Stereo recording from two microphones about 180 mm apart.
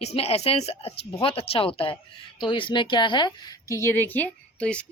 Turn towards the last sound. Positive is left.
turn(degrees=5)  # may be behind; listen again after turning